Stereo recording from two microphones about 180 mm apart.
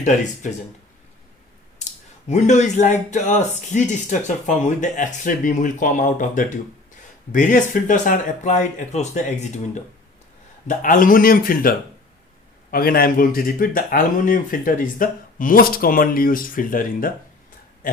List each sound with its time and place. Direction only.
0.0 s speech: 40° left (ahead or behind)
1.8 s speech: 40° left (ahead or behind)
10.7 s speech: 50° left (ahead or behind)